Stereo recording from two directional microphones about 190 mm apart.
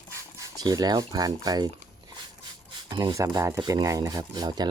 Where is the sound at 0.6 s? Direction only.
20° right (ahead or behind).